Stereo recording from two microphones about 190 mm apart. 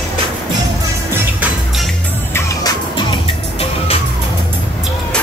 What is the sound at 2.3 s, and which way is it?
Music, 20° left (ahead or behind).